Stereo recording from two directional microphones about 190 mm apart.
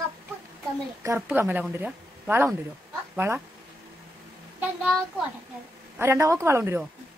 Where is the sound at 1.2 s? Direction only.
10° right (ahead or behind).